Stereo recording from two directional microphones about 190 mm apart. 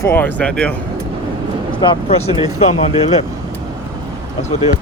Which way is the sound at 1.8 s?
25° left (ahead or behind).